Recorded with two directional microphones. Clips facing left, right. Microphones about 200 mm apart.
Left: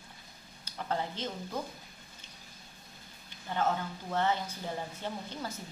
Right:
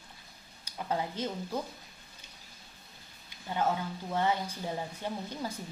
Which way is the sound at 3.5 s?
10° right (ahead or behind).